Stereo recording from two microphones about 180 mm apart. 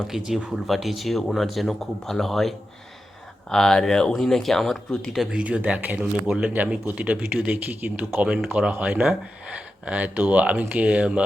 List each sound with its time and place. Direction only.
0.3 s speech: centre (ahead or behind)